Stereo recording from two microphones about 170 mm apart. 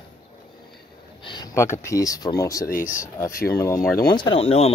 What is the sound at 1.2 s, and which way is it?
Speech, 25° left (ahead or behind).